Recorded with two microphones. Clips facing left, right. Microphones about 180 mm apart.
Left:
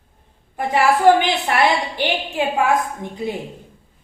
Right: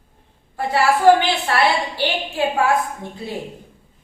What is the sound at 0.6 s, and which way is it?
A woman's voice, 15° left (ahead or behind).